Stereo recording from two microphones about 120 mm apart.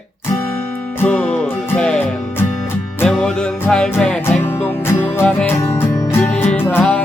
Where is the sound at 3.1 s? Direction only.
5° left (ahead or behind).